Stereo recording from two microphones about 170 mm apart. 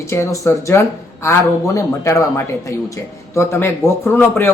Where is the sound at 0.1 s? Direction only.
15° left (ahead or behind).